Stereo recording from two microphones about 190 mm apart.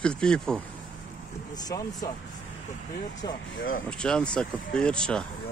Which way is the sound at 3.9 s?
5° left (ahead or behind).